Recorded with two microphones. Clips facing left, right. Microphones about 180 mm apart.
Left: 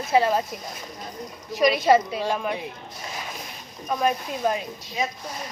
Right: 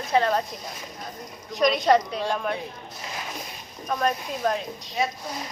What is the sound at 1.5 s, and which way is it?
A woman's voice, centre (ahead or behind).